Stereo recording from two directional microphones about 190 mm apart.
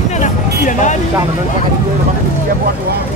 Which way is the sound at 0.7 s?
40° left (ahead or behind).